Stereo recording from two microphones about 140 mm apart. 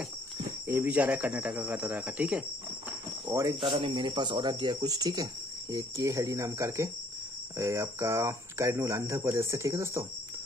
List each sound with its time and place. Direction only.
0.7 s speech: 15° right (ahead or behind)
3.3 s speech: 25° right (ahead or behind)